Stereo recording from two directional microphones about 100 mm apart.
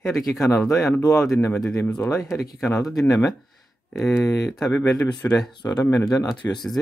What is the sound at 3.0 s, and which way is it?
Speech, 30° left (ahead or behind).